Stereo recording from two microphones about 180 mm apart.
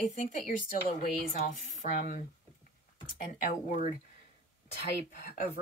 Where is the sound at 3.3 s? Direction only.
45° left (ahead or behind).